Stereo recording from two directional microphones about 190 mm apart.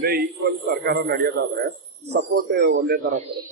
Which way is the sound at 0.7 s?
55° right (ahead or behind).